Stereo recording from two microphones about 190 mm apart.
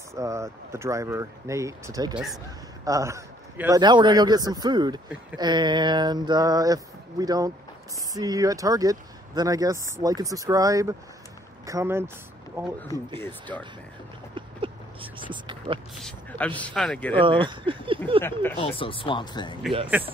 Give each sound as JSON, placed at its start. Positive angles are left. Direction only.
{"t": 0.1, "sound": "speech", "side_deg": -15}
{"t": 2.1, "sound": "speech", "side_deg": 0}
{"t": 2.8, "sound": "a man's voice", "side_deg": -15}
{"t": 13.1, "sound": "a man's voice", "side_deg": 10}
{"t": 14.3, "sound": "a sound", "side_deg": -25}
{"t": 16.0, "sound": "a man's voice", "side_deg": 5}
{"t": 17.1, "sound": "speech", "side_deg": -25}
{"t": 18.2, "sound": "a man's voice", "side_deg": 10}
{"t": 18.6, "sound": "speech", "side_deg": 25}
{"t": 19.9, "sound": "speech", "side_deg": -10}